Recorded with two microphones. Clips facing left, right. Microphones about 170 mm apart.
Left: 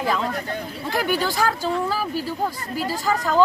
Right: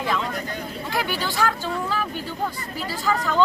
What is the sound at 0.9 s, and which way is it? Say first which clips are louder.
A woman's voice: left 5 dB; 45° left (ahead or behind).